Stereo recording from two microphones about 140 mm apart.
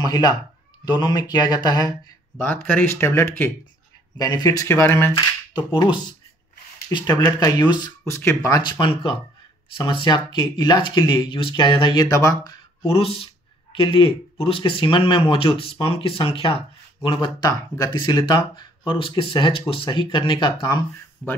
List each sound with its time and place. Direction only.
0.0 s speech: 30° left (ahead or behind)
2.4 s speech: 15° left (ahead or behind)
5.1 s speech: 30° left (ahead or behind)
6.9 s speech: 30° left (ahead or behind)
8.0 s speech: 20° left (ahead or behind)
12.8 s speech: 45° left (ahead or behind)
21.2 s speech: 10° left (ahead or behind)